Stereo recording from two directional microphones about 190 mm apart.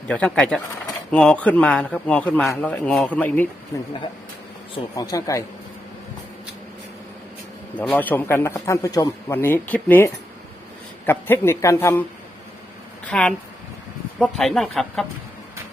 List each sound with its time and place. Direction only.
0.1 s a man's voice: 5° left (ahead or behind)
7.8 s a man's voice: 10° left (ahead or behind)
13.1 s speech: 5° left (ahead or behind)